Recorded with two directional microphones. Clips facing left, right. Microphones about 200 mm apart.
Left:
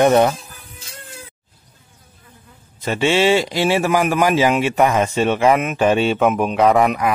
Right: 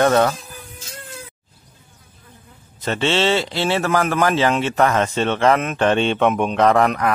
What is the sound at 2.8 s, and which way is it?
A man's voice, 10° left (ahead or behind).